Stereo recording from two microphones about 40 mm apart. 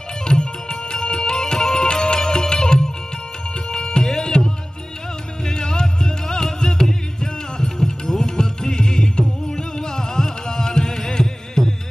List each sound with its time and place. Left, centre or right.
0.2 s music: left